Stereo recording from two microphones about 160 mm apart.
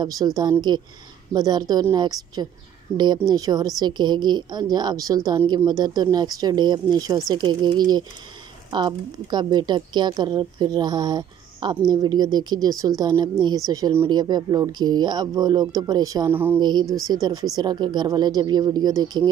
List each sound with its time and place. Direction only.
0.0 s a woman's voice: 20° right (ahead or behind)